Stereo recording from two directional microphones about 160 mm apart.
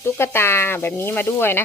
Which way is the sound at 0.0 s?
15° left (ahead or behind).